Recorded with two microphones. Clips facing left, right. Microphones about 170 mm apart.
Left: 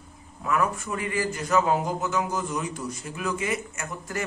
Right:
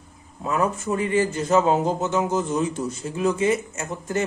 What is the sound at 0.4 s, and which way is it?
A man's voice, 25° right (ahead or behind).